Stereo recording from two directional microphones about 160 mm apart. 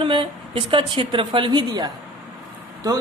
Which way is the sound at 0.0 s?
30° right (ahead or behind).